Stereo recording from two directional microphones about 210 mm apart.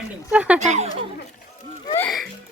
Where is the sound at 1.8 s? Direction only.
10° left (ahead or behind).